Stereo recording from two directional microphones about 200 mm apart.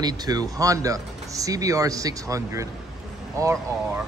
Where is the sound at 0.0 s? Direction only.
20° right (ahead or behind).